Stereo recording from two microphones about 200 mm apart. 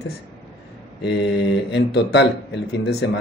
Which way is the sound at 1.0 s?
60° left (ahead or behind).